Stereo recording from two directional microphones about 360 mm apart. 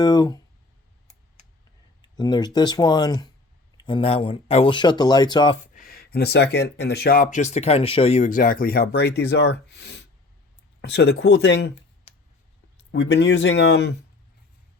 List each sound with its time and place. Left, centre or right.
0.0 s speech: centre
2.0 s speech: centre; by 13.9 s left